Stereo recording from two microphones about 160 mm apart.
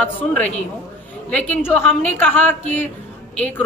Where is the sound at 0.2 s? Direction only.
10° left (ahead or behind).